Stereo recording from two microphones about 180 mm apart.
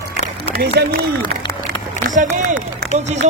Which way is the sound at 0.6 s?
60° right (ahead or behind).